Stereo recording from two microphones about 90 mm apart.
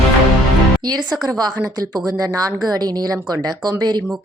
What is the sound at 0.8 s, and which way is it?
A woman's voice, 50° right (ahead or behind).